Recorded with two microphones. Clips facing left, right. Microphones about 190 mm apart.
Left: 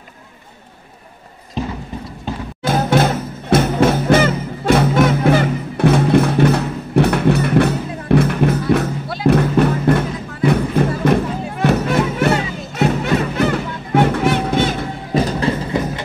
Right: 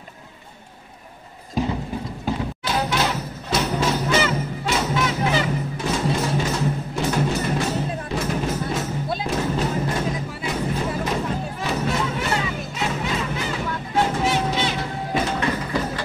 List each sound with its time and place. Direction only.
2.6 s music: 50° left (ahead or behind)
15.1 s music: 35° left (ahead or behind)